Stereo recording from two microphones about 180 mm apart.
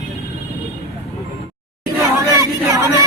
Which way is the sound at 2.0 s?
15° right (ahead or behind).